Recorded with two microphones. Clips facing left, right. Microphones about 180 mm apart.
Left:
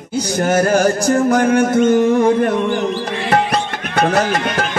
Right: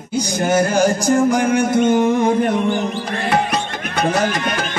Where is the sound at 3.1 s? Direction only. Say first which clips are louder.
Left 1 dB; 45° right (ahead or behind).